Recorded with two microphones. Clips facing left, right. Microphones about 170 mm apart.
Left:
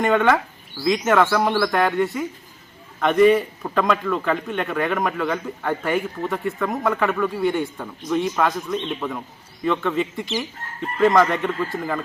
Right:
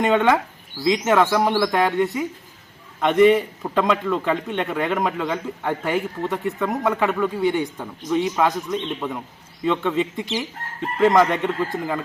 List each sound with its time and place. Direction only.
0.0 s a man's voice: 20° right (ahead or behind)